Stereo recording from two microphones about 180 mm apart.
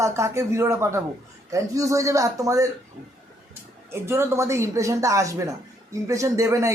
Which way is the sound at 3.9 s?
15° right (ahead or behind).